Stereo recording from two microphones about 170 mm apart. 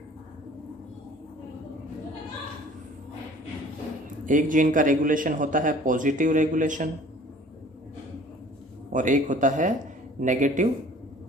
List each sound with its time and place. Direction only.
4.3 s a man's voice: 50° right (ahead or behind)
8.9 s a man's voice: 50° right (ahead or behind)